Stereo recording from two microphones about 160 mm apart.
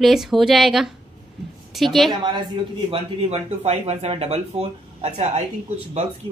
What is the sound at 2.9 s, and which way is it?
Speech, 40° right (ahead or behind).